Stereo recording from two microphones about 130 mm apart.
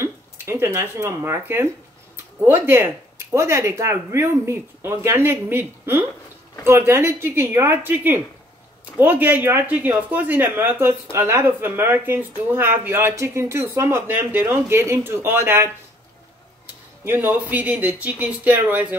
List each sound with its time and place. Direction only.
0.0 s speech: 20° right (ahead or behind)
17.0 s speech: 15° right (ahead or behind)